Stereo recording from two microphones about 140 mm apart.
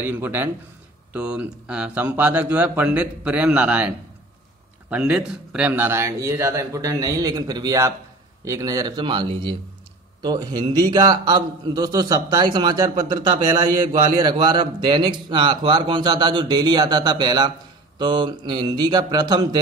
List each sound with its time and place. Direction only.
0.0 s a man's voice: 15° right (ahead or behind)